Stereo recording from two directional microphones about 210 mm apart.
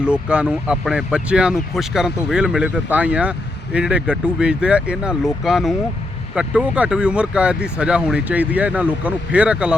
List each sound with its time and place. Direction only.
0.0 s speech: 5° right (ahead or behind)